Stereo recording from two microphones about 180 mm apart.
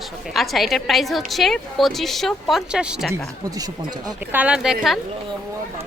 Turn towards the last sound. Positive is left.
turn(degrees=0)  # may be behind; listen again after turning